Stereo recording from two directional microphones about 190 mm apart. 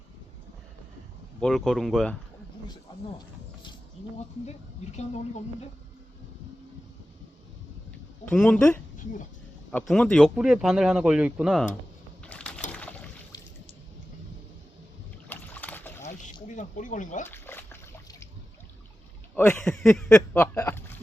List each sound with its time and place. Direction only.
1.4 s speech: centre (ahead or behind)
4.4 s speech: 35° left (ahead or behind)
8.2 s speech: 5° left (ahead or behind)
12.2 s a sound: 5° left (ahead or behind)
12.7 s boat: 5° left (ahead or behind)
15.3 s boat: 10° left (ahead or behind)
16.5 s speech: 40° left (ahead or behind)
17.2 s a sound: 10° left (ahead or behind)
19.4 s speech: 10° left (ahead or behind)
20.1 s a sound: 10° left (ahead or behind)